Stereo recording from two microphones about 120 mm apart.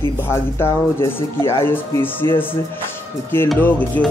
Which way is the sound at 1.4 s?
20° left (ahead or behind).